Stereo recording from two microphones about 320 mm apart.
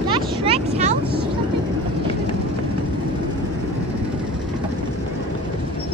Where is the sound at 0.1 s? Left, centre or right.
Centre.